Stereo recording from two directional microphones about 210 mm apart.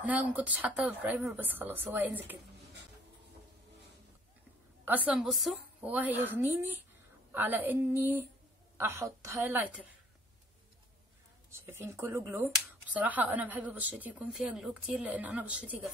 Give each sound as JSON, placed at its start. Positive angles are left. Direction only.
{"t": 0.0, "sound": "a woman's voice", "side_deg": -5}
{"t": 4.8, "sound": "a woman's voice", "side_deg": -5}
{"t": 11.5, "sound": "a woman's voice", "side_deg": -10}